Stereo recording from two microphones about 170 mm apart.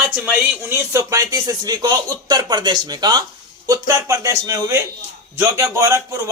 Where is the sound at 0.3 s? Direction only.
15° right (ahead or behind).